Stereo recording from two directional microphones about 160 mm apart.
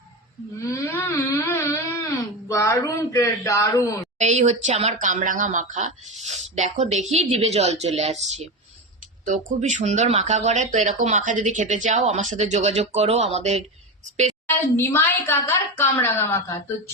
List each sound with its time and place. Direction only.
0.7 s a sound: 15° left (ahead or behind)
4.2 s speech: 45° right (ahead or behind)
14.8 s a woman's voice: 15° left (ahead or behind)